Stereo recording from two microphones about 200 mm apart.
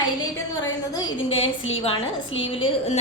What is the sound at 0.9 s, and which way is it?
A woman's voice, 25° left (ahead or behind).